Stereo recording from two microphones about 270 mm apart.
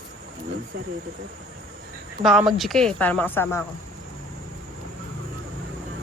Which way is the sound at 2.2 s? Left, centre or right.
Centre.